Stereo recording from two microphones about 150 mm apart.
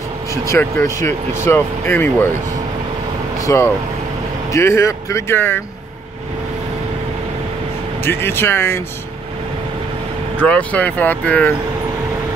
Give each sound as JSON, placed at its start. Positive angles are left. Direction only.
{"t": 0.3, "sound": "speech", "side_deg": 20}
{"t": 3.4, "sound": "speech", "side_deg": 20}
{"t": 8.0, "sound": "speech", "side_deg": 15}
{"t": 10.3, "sound": "speech", "side_deg": 10}